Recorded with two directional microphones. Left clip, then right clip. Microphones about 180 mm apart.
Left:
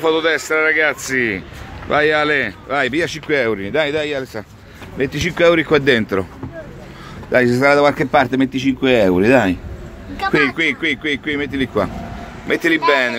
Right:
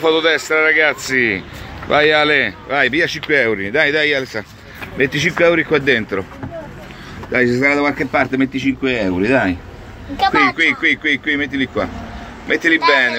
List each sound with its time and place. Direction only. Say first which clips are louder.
0.0 s speech: right 2 dB; 5° left (ahead or behind)
5.4 s a man's voice: left 2 dB; 25° left (ahead or behind)
7.3 s a man's voice: left 2 dB; 35° left (ahead or behind)